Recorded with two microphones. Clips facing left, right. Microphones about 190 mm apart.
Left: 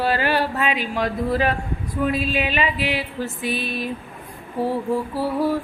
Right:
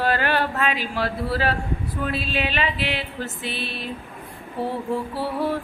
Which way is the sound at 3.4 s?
45° left (ahead or behind).